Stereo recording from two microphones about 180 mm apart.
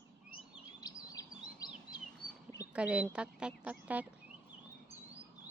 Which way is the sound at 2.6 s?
5° right (ahead or behind).